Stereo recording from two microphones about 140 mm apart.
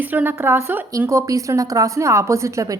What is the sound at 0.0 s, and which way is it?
A woman's voice, 10° right (ahead or behind).